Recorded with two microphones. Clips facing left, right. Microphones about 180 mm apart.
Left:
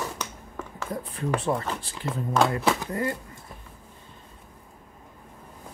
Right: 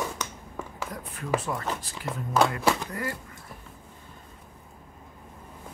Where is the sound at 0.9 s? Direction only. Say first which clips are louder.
Left 2 dB; 30° left (ahead or behind).